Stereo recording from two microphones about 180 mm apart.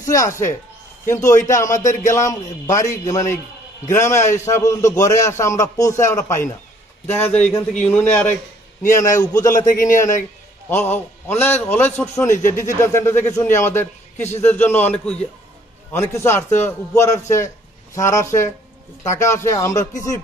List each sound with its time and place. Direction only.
0.0 s a man's voice: 20° left (ahead or behind)
9.7 s a man's voice: 45° left (ahead or behind)
10.7 s a man's voice: 10° left (ahead or behind)